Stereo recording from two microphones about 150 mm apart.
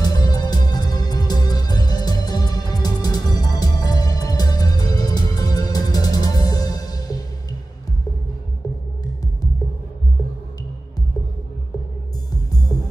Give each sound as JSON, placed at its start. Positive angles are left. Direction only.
{"t": 0.0, "sound": "music", "side_deg": 25}
{"t": 12.7, "sound": "music", "side_deg": 20}